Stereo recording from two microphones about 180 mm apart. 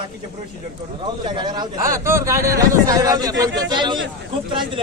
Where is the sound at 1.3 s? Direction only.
25° right (ahead or behind).